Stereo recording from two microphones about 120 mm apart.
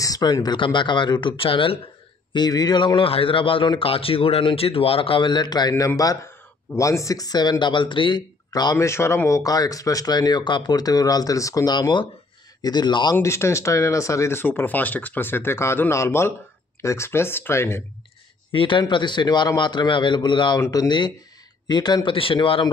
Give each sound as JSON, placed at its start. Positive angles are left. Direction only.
{"t": 0.0, "sound": "a man's voice", "side_deg": 30}
{"t": 2.3, "sound": "a man's voice", "side_deg": 35}
{"t": 13.2, "sound": "speech", "side_deg": 25}
{"t": 18.5, "sound": "a man's voice", "side_deg": 45}